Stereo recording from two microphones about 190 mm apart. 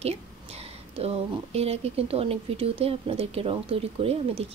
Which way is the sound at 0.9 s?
30° right (ahead or behind).